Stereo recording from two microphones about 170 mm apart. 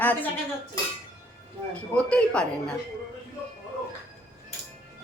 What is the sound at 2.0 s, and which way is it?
Speech, 5° left (ahead or behind).